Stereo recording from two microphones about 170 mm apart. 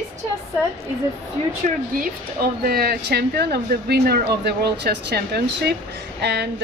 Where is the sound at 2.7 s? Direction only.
65° right (ahead or behind).